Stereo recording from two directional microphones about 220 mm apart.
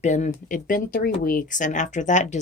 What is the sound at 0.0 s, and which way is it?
Speech, 35° left (ahead or behind).